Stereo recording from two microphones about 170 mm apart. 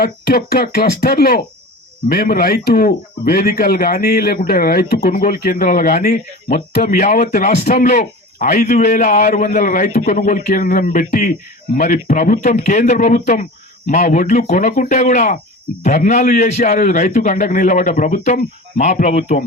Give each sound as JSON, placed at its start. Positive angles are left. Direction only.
{"t": 0.0, "sound": "a man's voice", "side_deg": 65}